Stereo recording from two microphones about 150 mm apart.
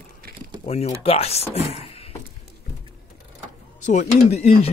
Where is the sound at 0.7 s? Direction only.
45° left (ahead or behind).